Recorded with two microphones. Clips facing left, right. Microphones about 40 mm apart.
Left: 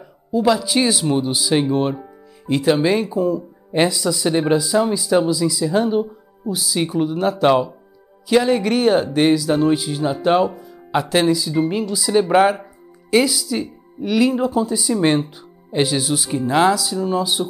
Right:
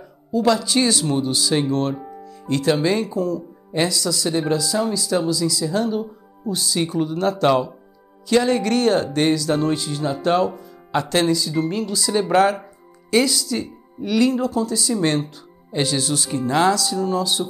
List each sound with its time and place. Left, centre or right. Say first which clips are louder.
0.0 s speech: left 1 dB; centre
6.5 s speech: left 1 dB; centre